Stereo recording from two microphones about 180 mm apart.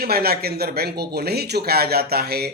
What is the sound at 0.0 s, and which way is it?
A man's voice, 60° right (ahead or behind).